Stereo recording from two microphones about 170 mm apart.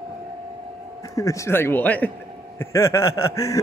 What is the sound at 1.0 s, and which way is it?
Speech, 20° left (ahead or behind).